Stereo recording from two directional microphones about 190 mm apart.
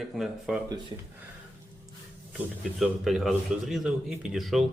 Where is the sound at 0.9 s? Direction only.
25° right (ahead or behind).